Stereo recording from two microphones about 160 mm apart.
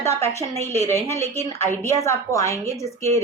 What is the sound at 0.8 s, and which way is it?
A woman's voice, 15° left (ahead or behind).